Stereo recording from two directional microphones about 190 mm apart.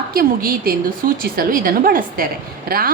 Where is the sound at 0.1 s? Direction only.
50° right (ahead or behind).